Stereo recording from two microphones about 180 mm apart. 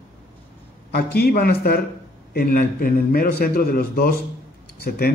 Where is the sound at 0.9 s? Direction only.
60° left (ahead or behind).